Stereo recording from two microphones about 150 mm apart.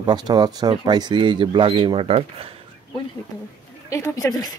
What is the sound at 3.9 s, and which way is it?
Speech, 20° left (ahead or behind).